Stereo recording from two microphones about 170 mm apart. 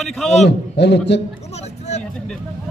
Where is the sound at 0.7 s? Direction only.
85° left.